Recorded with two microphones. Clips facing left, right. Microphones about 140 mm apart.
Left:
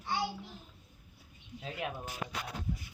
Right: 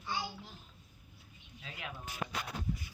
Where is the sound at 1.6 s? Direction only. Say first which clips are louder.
Left 7 dB; 40° left (ahead or behind).